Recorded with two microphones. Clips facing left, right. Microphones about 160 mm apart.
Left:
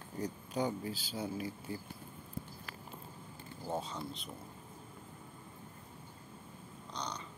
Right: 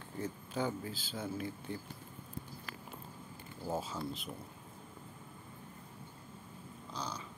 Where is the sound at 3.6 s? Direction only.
5° right (ahead or behind).